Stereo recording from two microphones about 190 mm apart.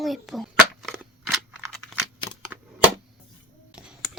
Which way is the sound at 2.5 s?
5° right (ahead or behind).